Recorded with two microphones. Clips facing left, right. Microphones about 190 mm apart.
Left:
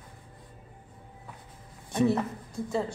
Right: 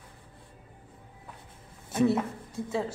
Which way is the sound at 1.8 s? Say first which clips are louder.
Even; 5° right (ahead or behind).